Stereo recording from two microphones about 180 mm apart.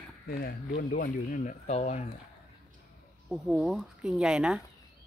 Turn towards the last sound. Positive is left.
turn(degrees=-5)  # may be behind; listen again after turning